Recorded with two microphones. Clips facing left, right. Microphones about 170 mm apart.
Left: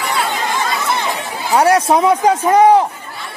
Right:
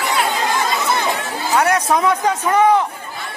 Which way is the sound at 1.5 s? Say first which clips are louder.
Left 4 dB; 30° left (ahead or behind).